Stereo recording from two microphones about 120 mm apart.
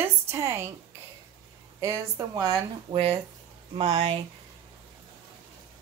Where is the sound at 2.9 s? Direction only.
55° right (ahead or behind).